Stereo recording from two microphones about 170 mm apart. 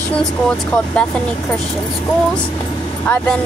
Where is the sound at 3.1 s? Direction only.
10° left (ahead or behind).